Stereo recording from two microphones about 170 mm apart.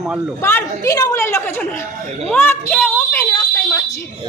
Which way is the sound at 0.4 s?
15° left (ahead or behind).